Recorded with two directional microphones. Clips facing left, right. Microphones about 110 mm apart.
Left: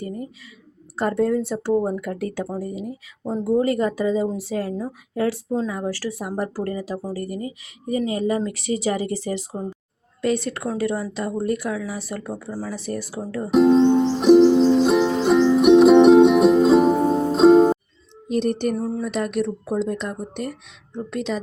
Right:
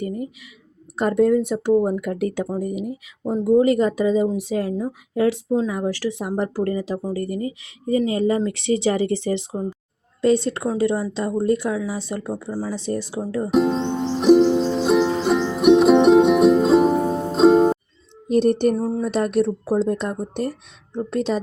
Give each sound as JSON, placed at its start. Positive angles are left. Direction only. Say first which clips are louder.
{"t": 0.9, "sound": "speech", "louder": "right 3 dB", "side_deg": -20}
{"t": 7.3, "sound": "speech", "louder": "right 4 dB", "side_deg": 30}
{"t": 8.1, "sound": "speech", "louder": "right 3 dB", "side_deg": -25}
{"t": 13.5, "sound": "music", "louder": "left 6 dB", "side_deg": 0}
{"t": 18.3, "sound": "speech", "louder": "right 5 dB", "side_deg": -40}
{"t": 18.8, "sound": "speech", "louder": "right 3 dB", "side_deg": -25}